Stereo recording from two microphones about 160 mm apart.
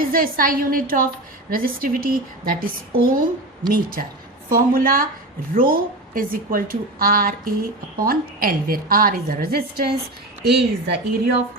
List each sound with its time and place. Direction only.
0.0 s a woman's voice: 65° right (ahead or behind)
10.8 s a woman's voice: 90° right